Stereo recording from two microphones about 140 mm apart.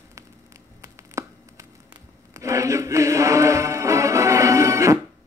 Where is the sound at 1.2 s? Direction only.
20° right (ahead or behind).